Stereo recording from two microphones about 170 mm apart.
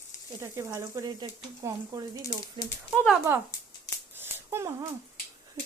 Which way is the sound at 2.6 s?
15° left (ahead or behind).